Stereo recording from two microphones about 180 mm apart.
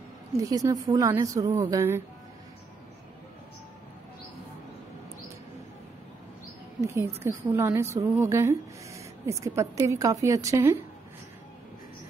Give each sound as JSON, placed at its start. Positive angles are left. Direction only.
{"t": 0.4, "sound": "a woman's voice", "side_deg": -20}
{"t": 6.8, "sound": "speech", "side_deg": -15}